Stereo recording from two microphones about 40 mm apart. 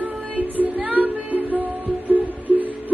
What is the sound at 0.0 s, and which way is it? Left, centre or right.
Music, right.